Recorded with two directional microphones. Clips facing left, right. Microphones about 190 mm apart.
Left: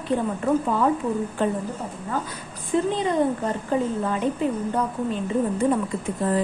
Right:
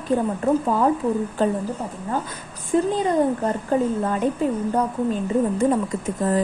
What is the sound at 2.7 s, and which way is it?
A woman's voice, 40° right (ahead or behind).